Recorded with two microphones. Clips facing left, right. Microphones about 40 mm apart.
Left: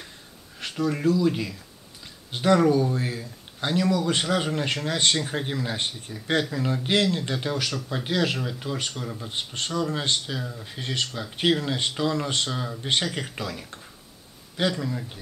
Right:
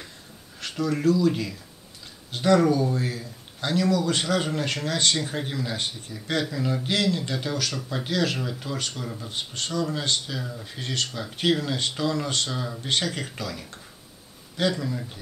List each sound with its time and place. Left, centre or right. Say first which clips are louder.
0.6 s speech: even; centre
9.3 s speech: left 1 dB; left
10.4 s speech: even; centre; by 12.4 s left
12.4 s speech: left 1 dB; centre
12.8 s speech: left 1 dB; left